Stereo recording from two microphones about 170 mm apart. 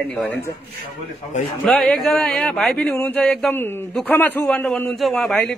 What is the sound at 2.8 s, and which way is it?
A man's voice, 15° left (ahead or behind).